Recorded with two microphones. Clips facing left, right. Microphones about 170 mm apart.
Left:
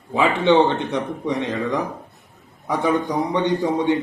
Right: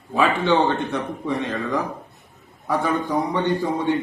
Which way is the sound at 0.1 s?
20° left (ahead or behind).